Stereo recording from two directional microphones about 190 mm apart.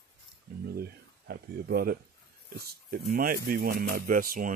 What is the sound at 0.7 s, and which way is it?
Speech, 55° right (ahead or behind).